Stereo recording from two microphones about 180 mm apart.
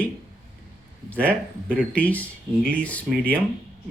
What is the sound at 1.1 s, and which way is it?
Speech, 10° left (ahead or behind).